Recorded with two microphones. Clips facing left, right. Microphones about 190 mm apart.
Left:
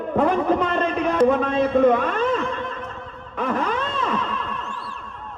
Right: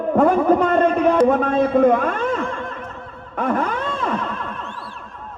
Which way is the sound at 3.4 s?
50° right (ahead or behind).